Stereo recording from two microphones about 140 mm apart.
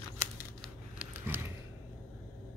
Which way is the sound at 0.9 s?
15° right (ahead or behind).